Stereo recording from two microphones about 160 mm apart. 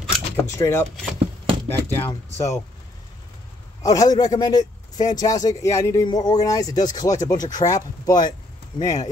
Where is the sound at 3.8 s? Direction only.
25° left (ahead or behind).